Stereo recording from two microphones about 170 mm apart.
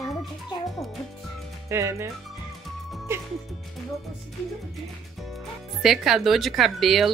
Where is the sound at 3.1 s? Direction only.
15° right (ahead or behind).